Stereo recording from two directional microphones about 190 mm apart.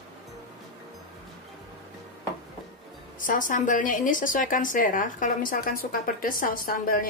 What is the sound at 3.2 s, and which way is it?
A woman's voice, 45° left (ahead or behind).